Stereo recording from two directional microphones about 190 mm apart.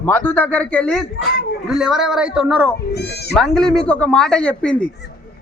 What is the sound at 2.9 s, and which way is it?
Speech, 60° left (ahead or behind).